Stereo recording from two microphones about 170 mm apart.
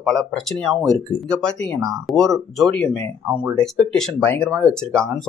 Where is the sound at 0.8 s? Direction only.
Centre (ahead or behind).